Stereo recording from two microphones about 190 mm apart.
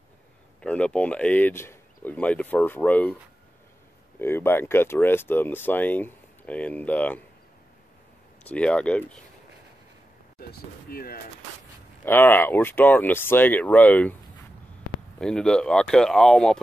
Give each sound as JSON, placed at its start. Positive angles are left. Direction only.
{"t": 0.6, "sound": "speech", "side_deg": 5}
{"t": 4.2, "sound": "speech", "side_deg": 10}
{"t": 8.5, "sound": "speech", "side_deg": 5}
{"t": 10.4, "sound": "speech", "side_deg": 50}
{"t": 12.0, "sound": "speech", "side_deg": 10}
{"t": 15.1, "sound": "speech", "side_deg": 5}